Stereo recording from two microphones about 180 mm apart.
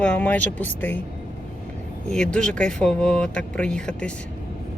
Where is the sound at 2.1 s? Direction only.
5° left (ahead or behind).